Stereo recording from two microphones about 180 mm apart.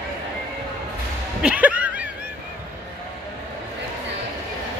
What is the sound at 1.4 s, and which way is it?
Music, 10° right (ahead or behind).